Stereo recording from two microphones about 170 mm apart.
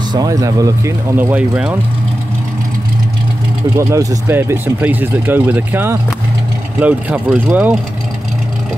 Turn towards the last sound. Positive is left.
turn(degrees=-10)  # may be behind; listen again after turning